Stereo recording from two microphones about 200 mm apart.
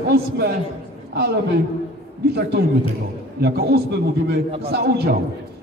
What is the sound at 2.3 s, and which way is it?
A man's voice, 55° right (ahead or behind).